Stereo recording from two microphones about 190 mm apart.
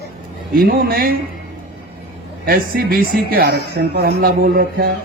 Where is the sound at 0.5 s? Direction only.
55° right (ahead or behind).